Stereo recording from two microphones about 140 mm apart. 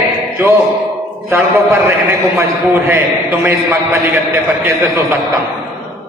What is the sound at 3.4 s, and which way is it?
Speech, 20° right (ahead or behind).